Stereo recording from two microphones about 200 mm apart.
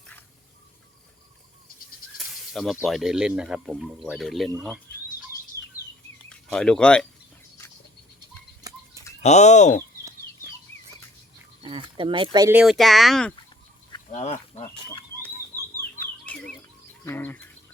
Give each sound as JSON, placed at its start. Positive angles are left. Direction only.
{"t": 2.1, "sound": "speech", "side_deg": 0}
{"t": 6.2, "sound": "speech", "side_deg": 5}
{"t": 8.6, "sound": "a sound", "side_deg": -20}
{"t": 9.2, "sound": "speech", "side_deg": 35}
{"t": 11.6, "sound": "speech", "side_deg": -25}
{"t": 12.5, "sound": "speech", "side_deg": 0}
{"t": 14.1, "sound": "speech", "side_deg": 35}
{"t": 16.2, "sound": "bird", "side_deg": 5}
{"t": 17.1, "sound": "speech", "side_deg": 10}